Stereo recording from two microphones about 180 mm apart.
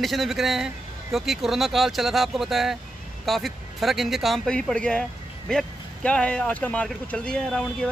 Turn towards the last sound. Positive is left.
turn(degrees=5)  # may be behind; listen again after turning